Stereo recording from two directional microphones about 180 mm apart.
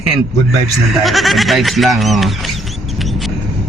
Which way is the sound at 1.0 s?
Centre (ahead or behind).